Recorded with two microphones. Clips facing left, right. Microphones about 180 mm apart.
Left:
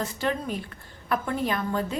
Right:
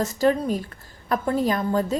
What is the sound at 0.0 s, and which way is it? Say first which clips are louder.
A woman's voice: right 7 dB; 40° right (ahead or behind).